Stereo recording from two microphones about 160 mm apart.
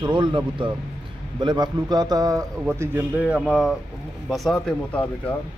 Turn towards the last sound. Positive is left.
turn(degrees=10)  # may be behind; listen again after turning